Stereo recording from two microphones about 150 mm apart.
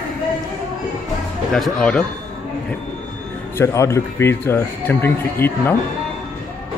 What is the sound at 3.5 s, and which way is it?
Speech, 20° left (ahead or behind).